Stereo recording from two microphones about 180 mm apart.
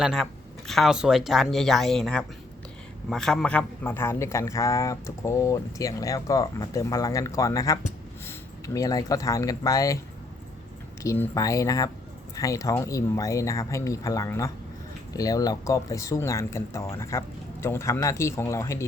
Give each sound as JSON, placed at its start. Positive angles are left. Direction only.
{"t": 0.0, "sound": "a man's voice", "side_deg": 0}
{"t": 11.0, "sound": "a man's voice", "side_deg": 15}